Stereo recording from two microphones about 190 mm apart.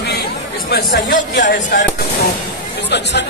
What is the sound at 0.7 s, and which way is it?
Speech, 50° left (ahead or behind).